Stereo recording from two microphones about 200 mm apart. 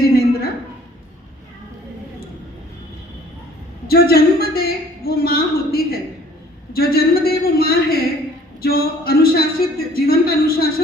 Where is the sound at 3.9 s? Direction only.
50° left (ahead or behind).